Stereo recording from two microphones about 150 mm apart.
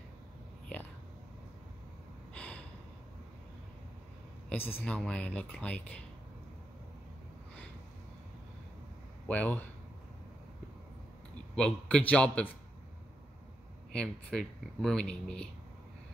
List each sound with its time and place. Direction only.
2.3 s gasp: 10° left (ahead or behind)
4.5 s speech: 15° left (ahead or behind)
9.3 s speech: 10° left (ahead or behind)
11.5 s a man's voice: 5° left (ahead or behind)
13.9 s speech: 5° left (ahead or behind)